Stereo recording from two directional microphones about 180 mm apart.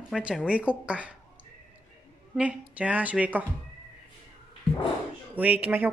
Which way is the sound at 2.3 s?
5° right (ahead or behind).